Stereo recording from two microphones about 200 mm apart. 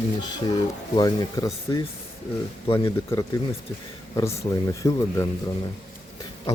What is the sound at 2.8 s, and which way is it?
Speech, 15° left (ahead or behind).